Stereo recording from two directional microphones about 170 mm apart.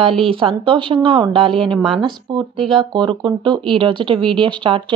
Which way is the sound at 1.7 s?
Centre (ahead or behind).